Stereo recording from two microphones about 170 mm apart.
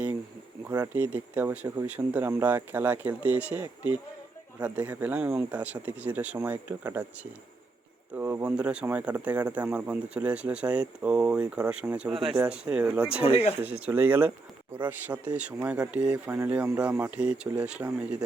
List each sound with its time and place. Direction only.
0.9 s speech: 10° right (ahead or behind)
8.1 s speech: 15° right (ahead or behind)
13.2 s speech: 35° left (ahead or behind)
13.6 s speech: 10° right (ahead or behind)